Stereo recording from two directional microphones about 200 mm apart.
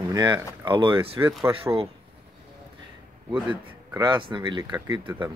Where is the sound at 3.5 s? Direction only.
20° right (ahead or behind).